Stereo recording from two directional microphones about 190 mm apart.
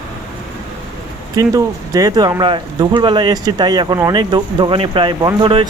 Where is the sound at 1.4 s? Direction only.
20° right (ahead or behind).